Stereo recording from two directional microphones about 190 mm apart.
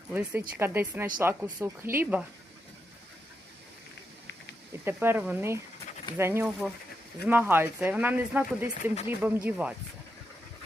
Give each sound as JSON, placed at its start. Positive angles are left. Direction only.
{"t": 0.1, "sound": "speech", "side_deg": -10}
{"t": 4.9, "sound": "speech", "side_deg": -10}
{"t": 8.8, "sound": "speech", "side_deg": 35}
{"t": 9.2, "sound": "speech", "side_deg": -10}